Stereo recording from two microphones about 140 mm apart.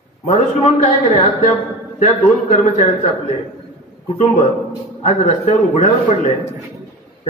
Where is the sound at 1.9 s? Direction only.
60° left (ahead or behind).